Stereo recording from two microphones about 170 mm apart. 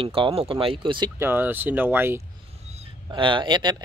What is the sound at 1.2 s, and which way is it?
Speech, 10° right (ahead or behind).